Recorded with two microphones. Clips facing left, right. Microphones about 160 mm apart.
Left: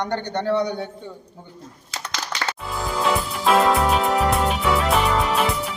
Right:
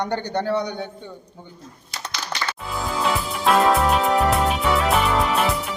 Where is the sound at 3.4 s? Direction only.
Centre (ahead or behind).